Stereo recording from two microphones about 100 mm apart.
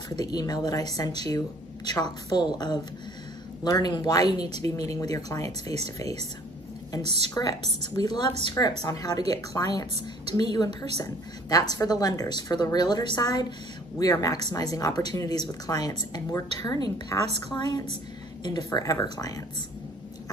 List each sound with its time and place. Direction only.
0.2 s speech: 40° left (ahead or behind)
7.3 s speech: 35° left (ahead or behind)